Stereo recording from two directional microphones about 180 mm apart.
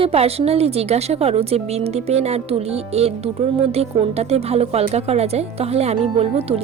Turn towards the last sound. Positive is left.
turn(degrees=-35)  # may be behind; listen again after turning